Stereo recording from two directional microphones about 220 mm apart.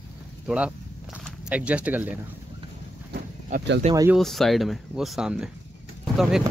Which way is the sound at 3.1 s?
45° right (ahead or behind).